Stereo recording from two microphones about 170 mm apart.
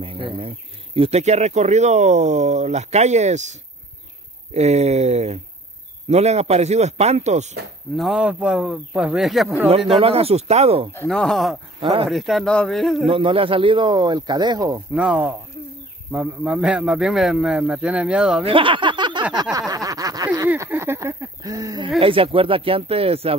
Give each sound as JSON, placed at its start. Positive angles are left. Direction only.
{"t": 0.0, "sound": "speech", "side_deg": -30}
{"t": 4.6, "sound": "speech", "side_deg": -40}
{"t": 7.9, "sound": "a man's voice", "side_deg": 0}
{"t": 9.9, "sound": "speech", "side_deg": -35}
{"t": 11.1, "sound": "a man's voice", "side_deg": 5}
{"t": 11.8, "sound": "speech", "side_deg": -35}
{"t": 12.1, "sound": "a man's voice", "side_deg": 0}
{"t": 13.0, "sound": "speech", "side_deg": -30}
{"t": 15.0, "sound": "a man's voice", "side_deg": -5}
{"t": 18.4, "sound": "a sound", "side_deg": -30}
{"t": 20.4, "sound": "speech", "side_deg": -15}